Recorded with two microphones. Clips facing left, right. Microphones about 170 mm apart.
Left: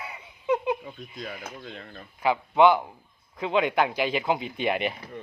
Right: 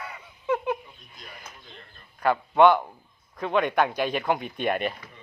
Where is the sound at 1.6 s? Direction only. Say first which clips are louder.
Left 9 dB; 90° left.